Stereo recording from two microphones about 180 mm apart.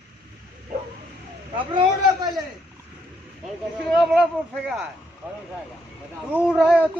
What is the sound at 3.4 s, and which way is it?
Speech, centre (ahead or behind).